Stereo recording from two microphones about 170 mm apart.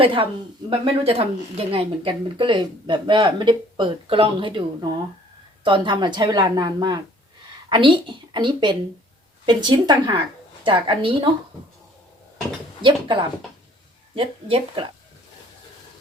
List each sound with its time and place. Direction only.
0.0 s speech: 30° right (ahead or behind)
12.8 s speech: 30° right (ahead or behind)